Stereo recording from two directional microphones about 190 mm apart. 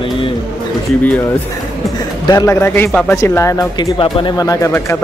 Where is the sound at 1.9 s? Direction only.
20° left (ahead or behind).